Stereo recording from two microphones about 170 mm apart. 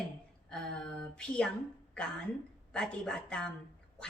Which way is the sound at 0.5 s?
5° left (ahead or behind).